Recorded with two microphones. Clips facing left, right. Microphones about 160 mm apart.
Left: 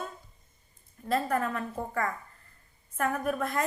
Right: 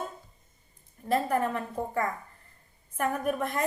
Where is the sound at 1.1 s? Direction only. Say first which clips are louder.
Right 2 dB; 20° right (ahead or behind).